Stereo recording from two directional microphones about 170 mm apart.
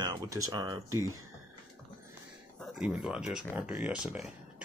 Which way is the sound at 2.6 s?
Centre (ahead or behind).